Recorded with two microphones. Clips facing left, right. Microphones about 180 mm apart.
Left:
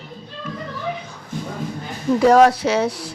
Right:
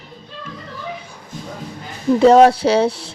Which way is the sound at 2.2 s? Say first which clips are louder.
Right 3 dB; 25° right (ahead or behind).